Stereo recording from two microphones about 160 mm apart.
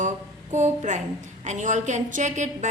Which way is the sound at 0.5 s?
50° right (ahead or behind).